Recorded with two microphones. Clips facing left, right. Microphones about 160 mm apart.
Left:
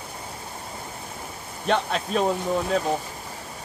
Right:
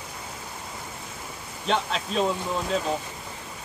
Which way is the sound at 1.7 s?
55° left (ahead or behind).